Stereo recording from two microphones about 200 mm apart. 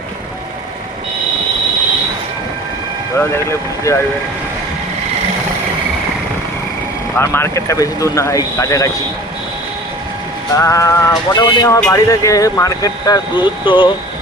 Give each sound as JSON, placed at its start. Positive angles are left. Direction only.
{"t": 3.9, "sound": "speech", "side_deg": 15}
{"t": 7.2, "sound": "speech", "side_deg": 10}
{"t": 10.5, "sound": "speech", "side_deg": 15}